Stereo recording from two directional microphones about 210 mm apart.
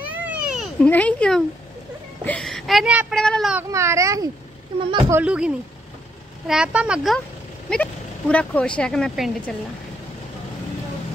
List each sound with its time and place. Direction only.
0.2 s a sound: 5° right (ahead or behind)
2.2 s speech: 5° left (ahead or behind)
3.7 s speech: 15° right (ahead or behind)
5.1 s speech: 5° right (ahead or behind)